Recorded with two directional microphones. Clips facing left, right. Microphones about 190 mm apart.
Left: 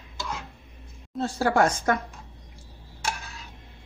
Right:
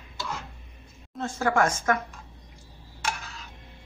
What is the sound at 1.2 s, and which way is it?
Speech, 35° left (ahead or behind).